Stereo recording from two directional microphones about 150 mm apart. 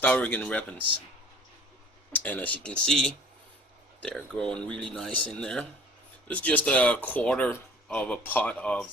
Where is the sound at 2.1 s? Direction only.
10° left (ahead or behind).